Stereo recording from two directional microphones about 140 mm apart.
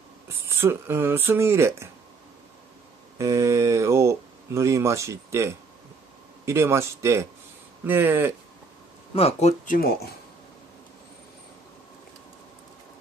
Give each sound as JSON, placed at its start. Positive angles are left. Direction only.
{"t": 0.6, "sound": "speech", "side_deg": -20}
{"t": 3.2, "sound": "speech", "side_deg": -20}
{"t": 9.1, "sound": "speech", "side_deg": 50}
{"t": 9.8, "sound": "speech", "side_deg": 90}